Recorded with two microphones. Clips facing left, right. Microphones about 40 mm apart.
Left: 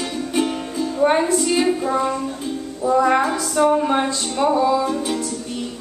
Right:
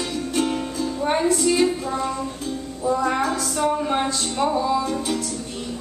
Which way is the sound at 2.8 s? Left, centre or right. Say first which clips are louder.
Left 5 dB; centre.